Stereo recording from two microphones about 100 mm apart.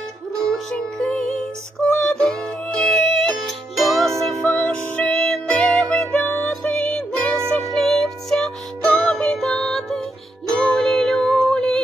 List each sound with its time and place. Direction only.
0.5 s music: 10° left (ahead or behind)
4.6 s music: 10° left (ahead or behind)
5.9 s music: 15° left (ahead or behind)